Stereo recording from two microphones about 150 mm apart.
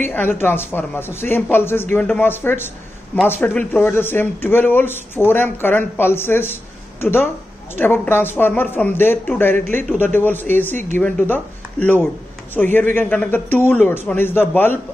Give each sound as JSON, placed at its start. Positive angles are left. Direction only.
{"t": 0.1, "sound": "speech", "side_deg": 15}